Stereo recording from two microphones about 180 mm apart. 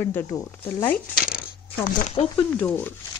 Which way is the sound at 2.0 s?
35° left (ahead or behind).